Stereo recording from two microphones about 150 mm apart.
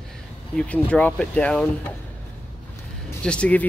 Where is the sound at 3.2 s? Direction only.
5° left (ahead or behind).